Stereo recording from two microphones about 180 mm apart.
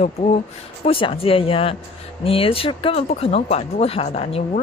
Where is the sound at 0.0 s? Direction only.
40° left (ahead or behind).